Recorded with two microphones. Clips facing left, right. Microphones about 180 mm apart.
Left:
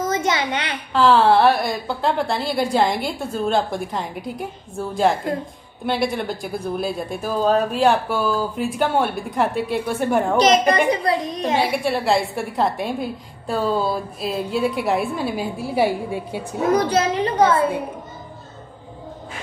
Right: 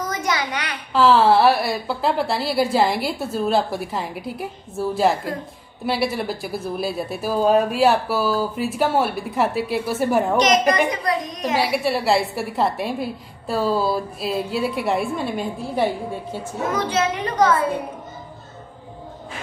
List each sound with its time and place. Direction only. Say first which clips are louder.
0.0 s a sound: left 3 dB; 25° left (ahead or behind)
0.9 s a woman's voice: even; centre (ahead or behind)
10.7 s a woman's voice: left 2 dB; 30° left (ahead or behind)
11.7 s a woman's voice: even; 5° right (ahead or behind)
16.7 s a child's voice: left 3 dB; 35° left (ahead or behind)